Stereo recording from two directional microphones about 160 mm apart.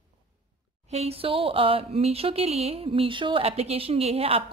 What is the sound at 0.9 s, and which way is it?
Speech, 40° right (ahead or behind).